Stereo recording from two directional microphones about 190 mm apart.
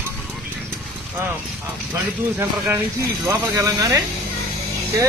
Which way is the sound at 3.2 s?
15° right (ahead or behind).